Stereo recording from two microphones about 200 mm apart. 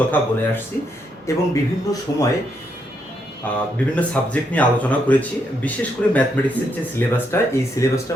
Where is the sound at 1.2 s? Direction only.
15° left (ahead or behind).